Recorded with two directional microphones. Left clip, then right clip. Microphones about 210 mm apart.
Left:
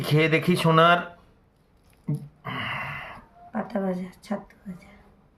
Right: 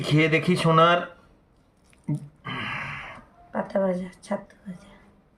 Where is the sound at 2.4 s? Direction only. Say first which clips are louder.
Left 1 dB; 55° left (ahead or behind).